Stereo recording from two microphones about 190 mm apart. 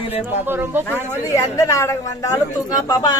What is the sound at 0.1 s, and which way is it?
Speech, 10° right (ahead or behind).